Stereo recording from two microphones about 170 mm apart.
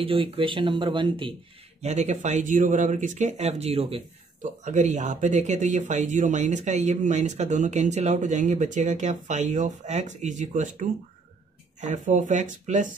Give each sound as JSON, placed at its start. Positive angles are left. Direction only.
{"t": 0.0, "sound": "speech", "side_deg": -35}
{"t": 1.8, "sound": "speech", "side_deg": -40}